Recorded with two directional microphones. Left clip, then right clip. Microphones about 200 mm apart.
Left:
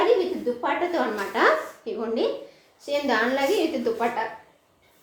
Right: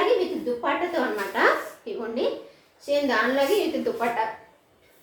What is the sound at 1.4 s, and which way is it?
Speech, 45° left (ahead or behind).